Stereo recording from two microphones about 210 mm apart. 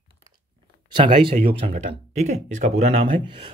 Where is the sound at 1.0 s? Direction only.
30° right (ahead or behind).